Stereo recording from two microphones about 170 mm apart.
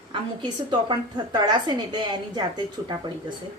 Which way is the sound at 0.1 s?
30° right (ahead or behind).